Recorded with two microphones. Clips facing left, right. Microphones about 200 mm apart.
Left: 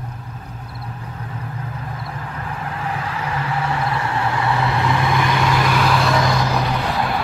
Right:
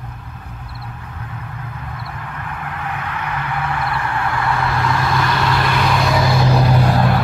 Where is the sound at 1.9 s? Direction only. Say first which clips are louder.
Left 1 dB; 25° left (ahead or behind); by 6.4 s 5° right (ahead or behind).